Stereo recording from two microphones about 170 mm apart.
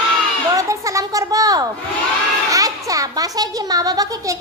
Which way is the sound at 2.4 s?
20° right (ahead or behind).